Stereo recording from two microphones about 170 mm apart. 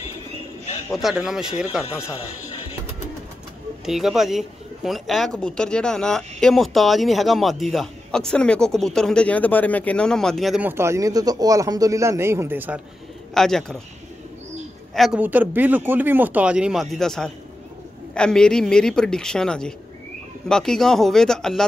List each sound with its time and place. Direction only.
0.9 s speech: centre (ahead or behind)
3.8 s speech: centre (ahead or behind)
10.7 s speech: 15° right (ahead or behind)
13.3 s speech: 5° left (ahead or behind)
15.0 s speech: 5° right (ahead or behind)